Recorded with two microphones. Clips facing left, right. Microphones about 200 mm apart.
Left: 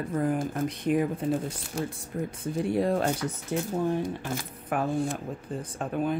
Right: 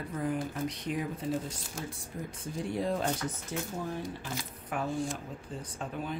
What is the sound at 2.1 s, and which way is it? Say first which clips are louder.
Speech: left 8 dB; 65° left (ahead or behind).